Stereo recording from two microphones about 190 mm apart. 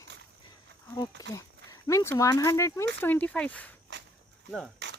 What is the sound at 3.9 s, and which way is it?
Walk, 65° right (ahead or behind).